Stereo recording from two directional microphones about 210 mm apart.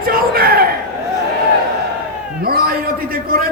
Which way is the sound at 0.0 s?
45° right (ahead or behind).